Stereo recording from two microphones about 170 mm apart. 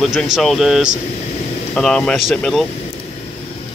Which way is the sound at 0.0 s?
Centre (ahead or behind).